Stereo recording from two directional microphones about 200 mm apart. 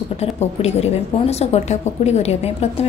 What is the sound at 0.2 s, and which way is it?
A woman's voice, 30° left (ahead or behind).